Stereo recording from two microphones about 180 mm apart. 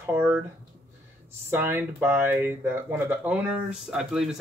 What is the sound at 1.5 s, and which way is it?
Speech, 10° right (ahead or behind).